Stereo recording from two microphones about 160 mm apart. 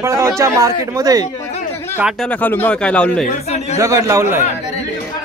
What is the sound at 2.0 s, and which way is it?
Speech, 5° right (ahead or behind).